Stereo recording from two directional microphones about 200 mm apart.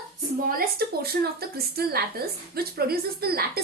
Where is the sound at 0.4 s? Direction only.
50° right (ahead or behind).